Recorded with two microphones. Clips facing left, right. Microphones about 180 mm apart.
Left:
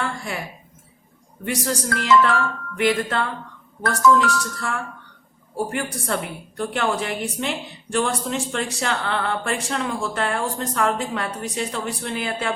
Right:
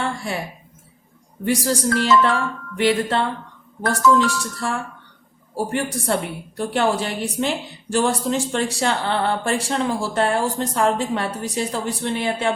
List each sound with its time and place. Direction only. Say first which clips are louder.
1.5 s speech: right 5 dB; 30° right (ahead or behind)